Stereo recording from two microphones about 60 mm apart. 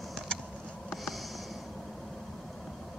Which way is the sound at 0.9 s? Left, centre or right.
Centre.